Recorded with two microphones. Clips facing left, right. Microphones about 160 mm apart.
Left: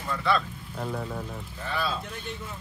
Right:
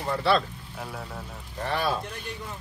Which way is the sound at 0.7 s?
Centre (ahead or behind).